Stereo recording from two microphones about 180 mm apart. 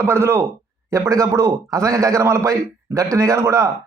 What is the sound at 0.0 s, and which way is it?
A man's voice, 15° right (ahead or behind).